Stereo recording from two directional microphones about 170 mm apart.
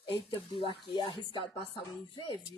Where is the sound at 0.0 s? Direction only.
30° left (ahead or behind).